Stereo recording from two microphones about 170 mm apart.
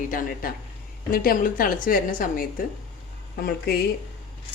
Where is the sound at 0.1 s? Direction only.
55° left (ahead or behind).